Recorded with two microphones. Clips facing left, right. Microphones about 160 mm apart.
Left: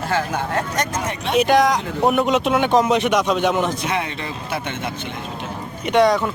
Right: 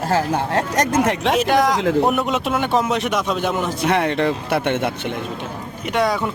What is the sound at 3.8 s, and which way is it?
Speech, 60° right (ahead or behind).